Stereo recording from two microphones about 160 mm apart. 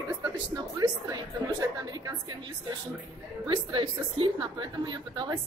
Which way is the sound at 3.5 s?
30° right (ahead or behind).